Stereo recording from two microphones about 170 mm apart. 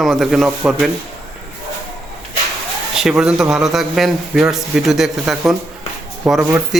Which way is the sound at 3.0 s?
5° right (ahead or behind).